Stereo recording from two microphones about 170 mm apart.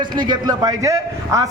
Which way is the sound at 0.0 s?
25° right (ahead or behind).